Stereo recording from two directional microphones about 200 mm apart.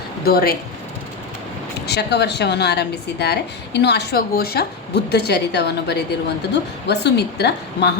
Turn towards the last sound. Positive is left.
turn(degrees=55)  # may be behind; listen again after turning